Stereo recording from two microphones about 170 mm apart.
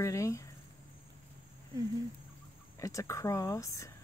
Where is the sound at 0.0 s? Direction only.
20° left (ahead or behind).